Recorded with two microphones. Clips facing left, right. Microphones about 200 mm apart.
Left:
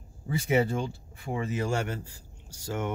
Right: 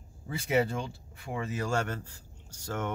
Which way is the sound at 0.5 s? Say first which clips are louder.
Left 2 dB; 25° left (ahead or behind).